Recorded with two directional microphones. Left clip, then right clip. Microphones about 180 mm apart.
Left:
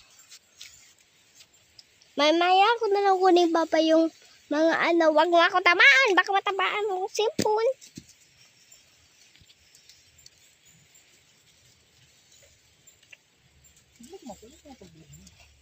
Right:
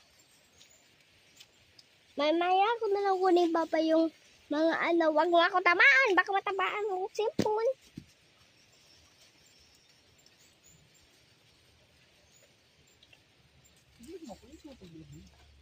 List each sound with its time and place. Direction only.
0.6 s mouse: 50° left (ahead or behind)
2.1 s speech: 45° left (ahead or behind); by 7.7 s 30° left (ahead or behind)